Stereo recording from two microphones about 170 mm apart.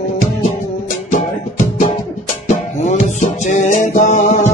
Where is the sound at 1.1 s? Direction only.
45° left (ahead or behind).